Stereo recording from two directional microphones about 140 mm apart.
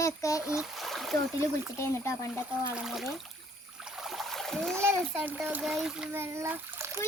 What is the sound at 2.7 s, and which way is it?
Speech, 5° right (ahead or behind).